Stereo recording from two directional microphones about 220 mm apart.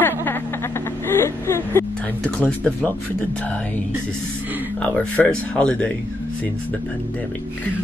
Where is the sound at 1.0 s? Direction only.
10° left (ahead or behind).